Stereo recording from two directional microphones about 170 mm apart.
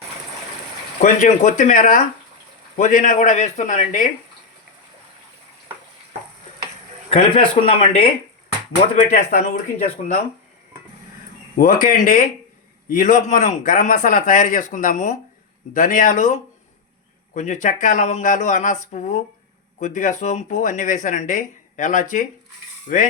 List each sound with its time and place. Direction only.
1.0 s speech: 45° left (ahead or behind)
7.1 s speech: 35° left (ahead or behind)
9.0 s speech: 50° left (ahead or behind)
11.5 s speech: 55° left (ahead or behind)